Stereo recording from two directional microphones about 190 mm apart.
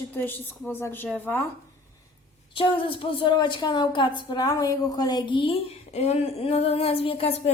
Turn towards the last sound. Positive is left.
turn(degrees=30)  # may be behind; listen again after turning